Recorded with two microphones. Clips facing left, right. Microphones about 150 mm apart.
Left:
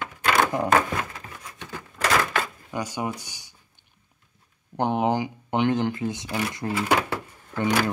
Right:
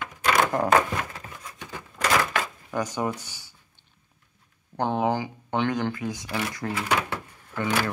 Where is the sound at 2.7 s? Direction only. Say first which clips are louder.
Right 2 dB; 10° left (ahead or behind).